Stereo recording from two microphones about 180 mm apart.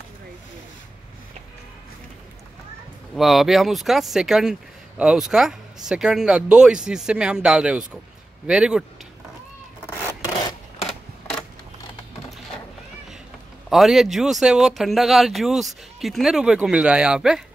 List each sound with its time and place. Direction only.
3.2 s speech: centre (ahead or behind)
9.8 s rub: 15° left (ahead or behind)
10.9 s a sound: 5° left (ahead or behind)
13.7 s speech: centre (ahead or behind)